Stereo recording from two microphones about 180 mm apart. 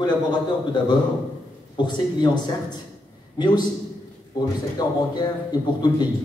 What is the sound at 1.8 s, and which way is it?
A man's voice, 25° left (ahead or behind).